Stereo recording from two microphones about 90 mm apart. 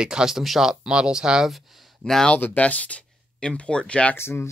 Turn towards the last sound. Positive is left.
turn(degrees=25)  # may be behind; listen again after turning